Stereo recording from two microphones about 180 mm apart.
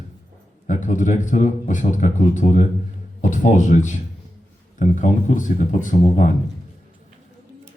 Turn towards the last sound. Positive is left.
turn(degrees=45)  # may be behind; listen again after turning